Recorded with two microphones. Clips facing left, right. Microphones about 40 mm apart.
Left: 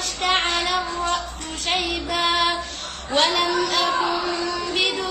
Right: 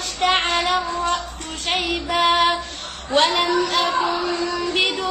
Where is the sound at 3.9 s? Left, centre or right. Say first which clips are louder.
Right 1 dB; right.